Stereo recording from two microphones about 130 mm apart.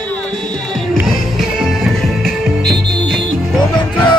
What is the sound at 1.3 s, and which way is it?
Music, centre (ahead or behind).